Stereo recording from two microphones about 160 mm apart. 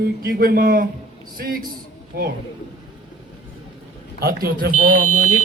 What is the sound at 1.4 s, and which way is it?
Speech, 65° right (ahead or behind).